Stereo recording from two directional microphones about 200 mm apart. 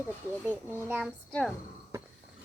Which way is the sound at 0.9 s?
10° right (ahead or behind).